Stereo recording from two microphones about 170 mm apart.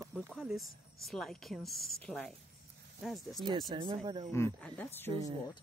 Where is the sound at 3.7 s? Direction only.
30° right (ahead or behind).